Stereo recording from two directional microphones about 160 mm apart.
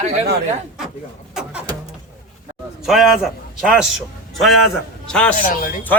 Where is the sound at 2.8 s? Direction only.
Centre (ahead or behind).